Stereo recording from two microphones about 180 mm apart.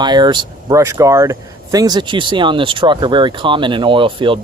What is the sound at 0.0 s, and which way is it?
Speech, 25° right (ahead or behind).